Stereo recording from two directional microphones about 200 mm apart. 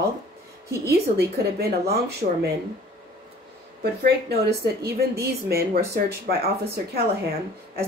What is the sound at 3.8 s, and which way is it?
Speech, 55° right (ahead or behind).